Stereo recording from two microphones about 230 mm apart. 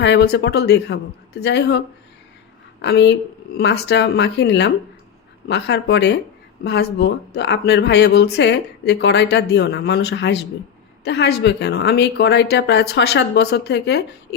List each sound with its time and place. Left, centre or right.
0.0 s speech: left
2.8 s speech: left